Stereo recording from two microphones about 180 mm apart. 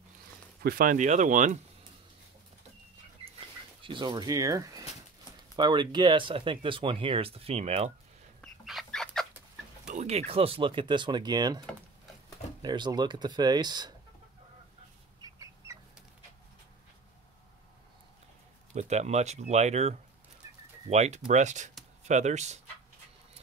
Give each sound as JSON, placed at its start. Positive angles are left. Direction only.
{"t": 0.6, "sound": "speech", "side_deg": -55}
{"t": 3.8, "sound": "speech", "side_deg": -25}
{"t": 8.4, "sound": "chicken", "side_deg": 0}
{"t": 9.8, "sound": "speech", "side_deg": -40}
{"t": 12.6, "sound": "speech", "side_deg": -25}
{"t": 15.1, "sound": "chicken", "side_deg": -20}
{"t": 18.8, "sound": "speech", "side_deg": -40}
{"t": 20.4, "sound": "bird", "side_deg": -20}
{"t": 20.9, "sound": "speech", "side_deg": -40}